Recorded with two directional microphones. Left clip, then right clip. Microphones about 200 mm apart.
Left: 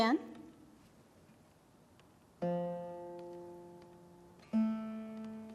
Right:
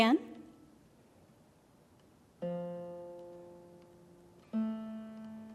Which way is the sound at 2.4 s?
50° left (ahead or behind).